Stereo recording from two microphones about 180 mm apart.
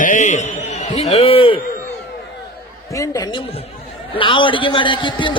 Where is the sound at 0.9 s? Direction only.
40° left (ahead or behind).